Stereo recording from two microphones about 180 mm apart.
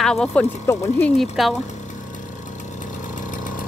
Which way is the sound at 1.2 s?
Centre (ahead or behind).